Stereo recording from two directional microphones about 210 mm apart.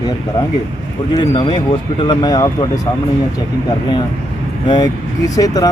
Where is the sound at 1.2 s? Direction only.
25° left (ahead or behind).